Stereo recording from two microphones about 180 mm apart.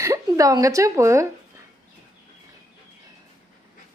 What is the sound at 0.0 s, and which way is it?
A woman's voice, 15° right (ahead or behind).